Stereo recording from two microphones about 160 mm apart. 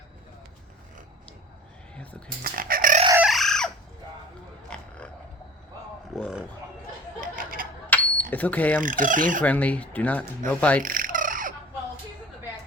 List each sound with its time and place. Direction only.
2.4 s speech: 65° right (ahead or behind)
3.2 s chicken: centre (ahead or behind)
4.7 s a sound: 5° left (ahead or behind)
6.1 s speech: centre (ahead or behind)
7.2 s a sound: 60° right (ahead or behind)
7.9 s a sound: 10° left (ahead or behind)
8.3 s speech: 10° left (ahead or behind)
8.8 s chicken: 55° right (ahead or behind)
9.4 s speech: 10° left (ahead or behind)
10.8 s fowl: 60° right (ahead or behind)